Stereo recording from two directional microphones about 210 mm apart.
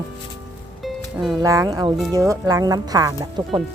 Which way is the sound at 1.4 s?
15° right (ahead or behind).